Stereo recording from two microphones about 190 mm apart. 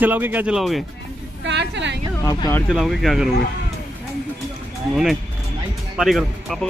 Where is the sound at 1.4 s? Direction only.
65° right (ahead or behind).